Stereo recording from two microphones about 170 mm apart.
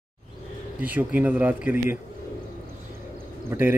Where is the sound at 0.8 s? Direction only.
10° right (ahead or behind).